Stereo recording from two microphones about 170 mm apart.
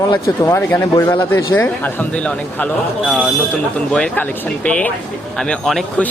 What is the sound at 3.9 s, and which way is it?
A man's voice, 10° left (ahead or behind).